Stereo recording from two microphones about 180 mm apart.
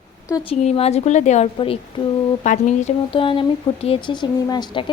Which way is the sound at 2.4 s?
45° left (ahead or behind).